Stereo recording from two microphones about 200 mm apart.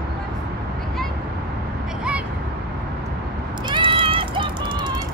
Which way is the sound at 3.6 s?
25° right (ahead or behind).